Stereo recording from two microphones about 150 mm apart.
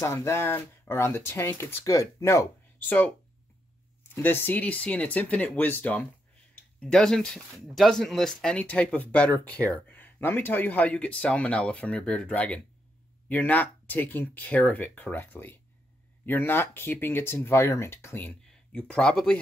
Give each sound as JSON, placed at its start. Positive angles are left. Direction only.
{"t": 0.0, "sound": "speech", "side_deg": 20}
{"t": 4.1, "sound": "speech", "side_deg": 15}